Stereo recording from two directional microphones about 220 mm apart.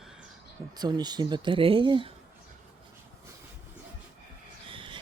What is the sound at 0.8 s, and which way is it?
Speech, 20° right (ahead or behind).